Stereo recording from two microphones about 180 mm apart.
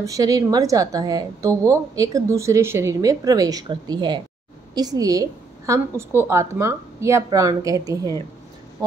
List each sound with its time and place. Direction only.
0.0 s a woman's voice: 20° right (ahead or behind)